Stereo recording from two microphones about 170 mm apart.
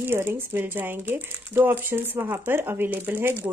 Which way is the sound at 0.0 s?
10° right (ahead or behind).